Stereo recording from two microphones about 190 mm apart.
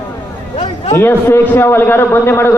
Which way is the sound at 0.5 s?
25° left (ahead or behind).